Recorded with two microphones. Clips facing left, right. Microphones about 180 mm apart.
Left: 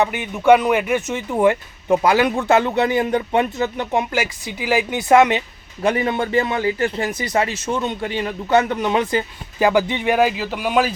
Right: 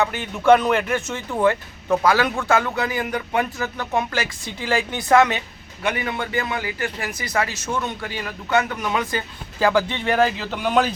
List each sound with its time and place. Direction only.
0.0 s speech: 15° left (ahead or behind)
5.8 s a man's voice: 30° left (ahead or behind); by 10.9 s 5° left (ahead or behind)